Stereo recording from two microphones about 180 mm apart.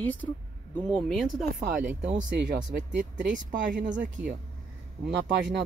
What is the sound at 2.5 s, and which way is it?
Speech, 45° right (ahead or behind).